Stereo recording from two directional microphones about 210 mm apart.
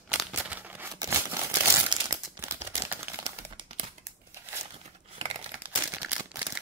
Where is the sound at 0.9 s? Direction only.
15° right (ahead or behind).